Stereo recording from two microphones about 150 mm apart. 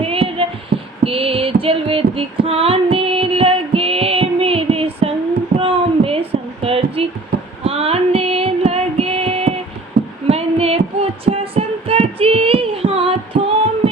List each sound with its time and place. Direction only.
0.0 s child singing: 40° right (ahead or behind)
0.7 s female singing: 75° right (ahead or behind)
1.0 s a sound: 40° right (ahead or behind)
5.5 s child singing: 40° right (ahead or behind)
7.6 s female singing: 40° right (ahead or behind)
10.2 s a sound: 45° right (ahead or behind)